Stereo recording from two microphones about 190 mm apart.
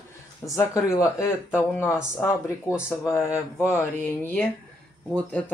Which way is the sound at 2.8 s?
15° left (ahead or behind).